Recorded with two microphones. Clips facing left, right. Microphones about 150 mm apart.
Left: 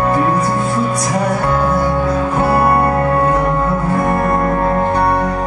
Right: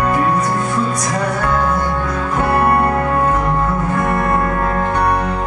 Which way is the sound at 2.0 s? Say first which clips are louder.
Left 3 dB; 30° left (ahead or behind).